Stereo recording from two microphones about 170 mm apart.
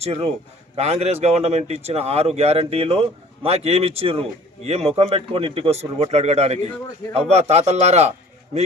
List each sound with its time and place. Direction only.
0.0 s speech: 35° right (ahead or behind)